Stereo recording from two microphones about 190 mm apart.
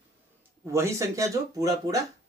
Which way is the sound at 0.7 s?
15° right (ahead or behind).